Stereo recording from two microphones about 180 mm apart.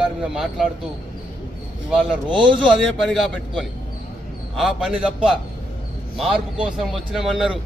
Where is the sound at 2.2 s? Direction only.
25° right (ahead or behind).